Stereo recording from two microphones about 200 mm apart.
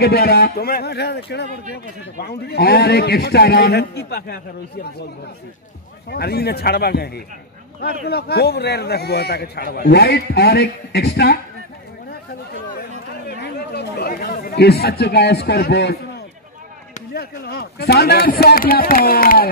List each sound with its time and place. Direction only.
0.0 s a man's voice: 50° left (ahead or behind)
6.0 s a man's voice: 50° left (ahead or behind)
13.3 s speech: 55° left (ahead or behind)
17.1 s a man's voice: 50° left (ahead or behind)